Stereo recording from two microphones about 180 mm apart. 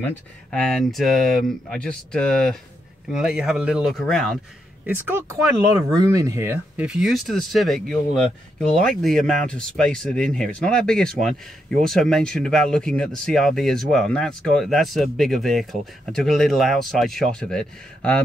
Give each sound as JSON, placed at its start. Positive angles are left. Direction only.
{"t": 0.0, "sound": "speech", "side_deg": 5}
{"t": 4.8, "sound": "speech", "side_deg": -10}